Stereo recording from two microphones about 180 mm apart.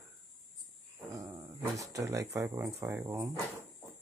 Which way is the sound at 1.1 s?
20° right (ahead or behind).